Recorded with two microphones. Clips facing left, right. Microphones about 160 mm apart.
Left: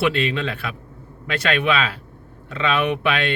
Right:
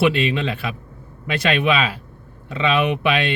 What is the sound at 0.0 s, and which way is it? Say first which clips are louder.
Speech: right 2 dB; 15° right (ahead or behind).